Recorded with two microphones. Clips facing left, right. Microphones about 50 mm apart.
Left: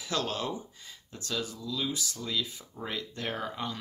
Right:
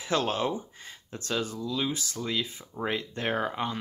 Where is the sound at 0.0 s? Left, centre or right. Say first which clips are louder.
Right 5 dB; right.